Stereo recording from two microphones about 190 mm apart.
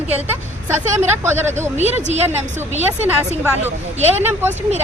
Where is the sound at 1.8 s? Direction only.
35° right (ahead or behind).